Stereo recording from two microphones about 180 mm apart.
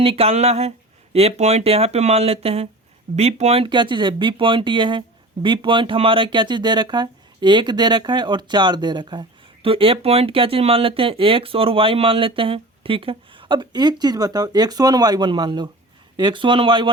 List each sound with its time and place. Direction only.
0.0 s speech: 30° right (ahead or behind)